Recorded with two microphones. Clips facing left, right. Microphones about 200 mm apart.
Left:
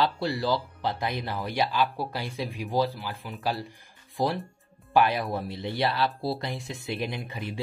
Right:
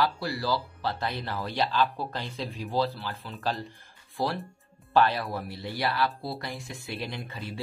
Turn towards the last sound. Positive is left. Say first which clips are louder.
# left 3 dB
turn(degrees=15)  # may be behind; listen again after turning